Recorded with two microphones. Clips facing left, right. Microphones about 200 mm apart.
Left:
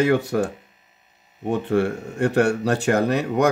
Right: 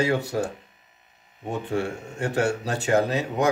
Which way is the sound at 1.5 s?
60° left (ahead or behind).